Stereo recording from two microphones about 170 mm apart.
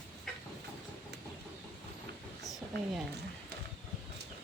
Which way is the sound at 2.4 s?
Centre (ahead or behind).